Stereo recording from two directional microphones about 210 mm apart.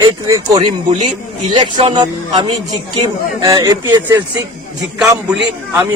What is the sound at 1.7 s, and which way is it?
Speech, 35° right (ahead or behind).